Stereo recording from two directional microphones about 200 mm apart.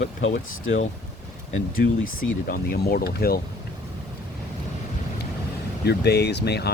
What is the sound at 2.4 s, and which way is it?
Speech, 45° left (ahead or behind).